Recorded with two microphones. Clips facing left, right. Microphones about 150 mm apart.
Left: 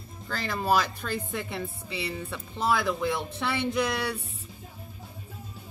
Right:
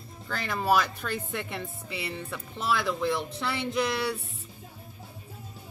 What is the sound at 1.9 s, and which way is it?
Speech, 30° left (ahead or behind).